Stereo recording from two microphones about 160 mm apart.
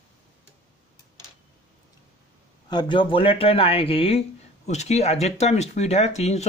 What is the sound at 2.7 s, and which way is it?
Speech, 30° left (ahead or behind).